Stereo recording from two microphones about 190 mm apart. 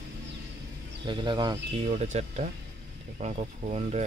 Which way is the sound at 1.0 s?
25° right (ahead or behind).